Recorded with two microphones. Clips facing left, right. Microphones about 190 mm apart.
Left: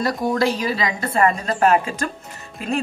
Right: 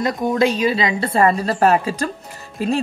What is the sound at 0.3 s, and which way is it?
A woman's voice, 20° right (ahead or behind).